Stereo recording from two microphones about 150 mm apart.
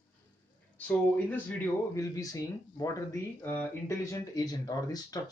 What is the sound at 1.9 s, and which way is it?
Speech, 25° left (ahead or behind).